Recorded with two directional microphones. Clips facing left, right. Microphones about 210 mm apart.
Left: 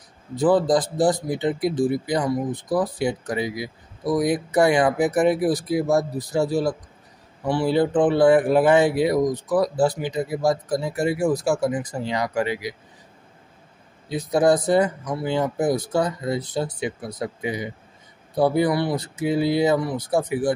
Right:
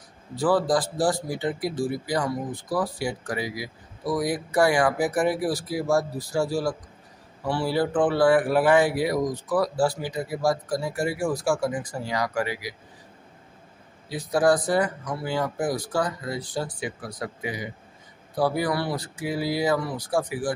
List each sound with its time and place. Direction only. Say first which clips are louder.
0.4 s speech: left 4 dB; 20° left (ahead or behind)
14.0 s speech: left 3 dB; 20° left (ahead or behind)